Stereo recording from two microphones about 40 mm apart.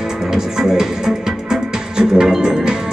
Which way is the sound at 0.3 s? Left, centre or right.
Centre.